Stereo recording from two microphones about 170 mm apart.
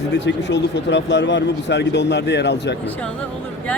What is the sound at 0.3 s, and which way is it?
Speech, 90° left.